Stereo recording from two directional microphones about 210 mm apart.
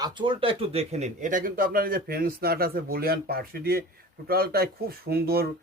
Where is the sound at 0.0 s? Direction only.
25° right (ahead or behind).